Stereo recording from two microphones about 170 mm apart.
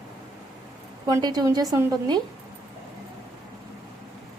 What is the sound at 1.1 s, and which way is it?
A woman's voice, 25° right (ahead or behind).